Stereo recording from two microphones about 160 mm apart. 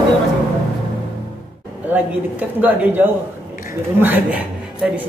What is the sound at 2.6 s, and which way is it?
A woman's voice, 10° right (ahead or behind).